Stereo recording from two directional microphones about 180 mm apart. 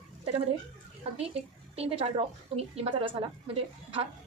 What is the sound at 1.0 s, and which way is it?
A woman's voice, 35° right (ahead or behind).